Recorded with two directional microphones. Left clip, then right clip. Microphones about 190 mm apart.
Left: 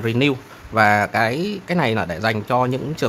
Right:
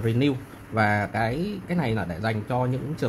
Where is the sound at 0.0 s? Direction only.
25° left (ahead or behind).